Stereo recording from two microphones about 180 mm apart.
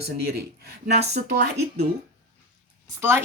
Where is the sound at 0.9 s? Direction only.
40° right (ahead or behind).